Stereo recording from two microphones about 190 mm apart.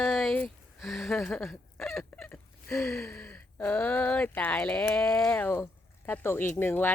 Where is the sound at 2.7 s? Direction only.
15° left (ahead or behind).